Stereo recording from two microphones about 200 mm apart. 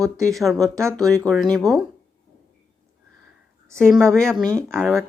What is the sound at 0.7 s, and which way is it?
Speech, 15° right (ahead or behind).